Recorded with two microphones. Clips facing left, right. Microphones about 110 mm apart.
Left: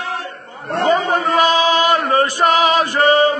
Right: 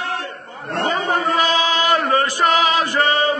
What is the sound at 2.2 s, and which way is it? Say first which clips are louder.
Music: left 3 dB; 30° left (ahead or behind).